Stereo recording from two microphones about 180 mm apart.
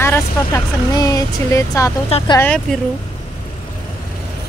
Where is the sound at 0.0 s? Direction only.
15° left (ahead or behind).